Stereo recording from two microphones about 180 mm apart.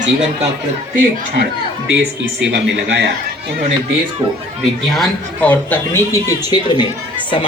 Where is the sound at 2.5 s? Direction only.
70° right (ahead or behind).